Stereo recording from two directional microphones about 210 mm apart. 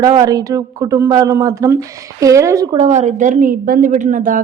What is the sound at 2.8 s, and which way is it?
A woman's voice, 35° right (ahead or behind).